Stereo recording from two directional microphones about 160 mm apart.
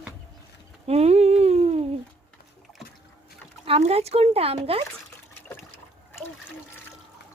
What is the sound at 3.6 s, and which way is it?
A woman's voice, 40° right (ahead or behind).